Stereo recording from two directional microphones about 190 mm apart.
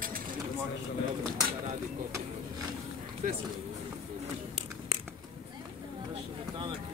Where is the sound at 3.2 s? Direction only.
45° right (ahead or behind).